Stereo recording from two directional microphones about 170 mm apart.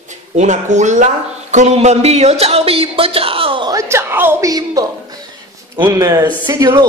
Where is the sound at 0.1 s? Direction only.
45° right (ahead or behind).